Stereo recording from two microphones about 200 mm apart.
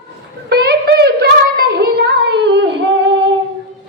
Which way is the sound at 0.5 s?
55° right (ahead or behind).